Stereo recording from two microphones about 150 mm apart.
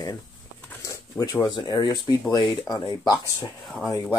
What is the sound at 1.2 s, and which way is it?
Speech, 20° left (ahead or behind).